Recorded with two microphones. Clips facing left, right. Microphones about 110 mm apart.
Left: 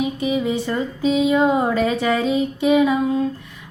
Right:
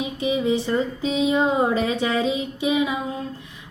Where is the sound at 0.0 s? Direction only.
25° right (ahead or behind).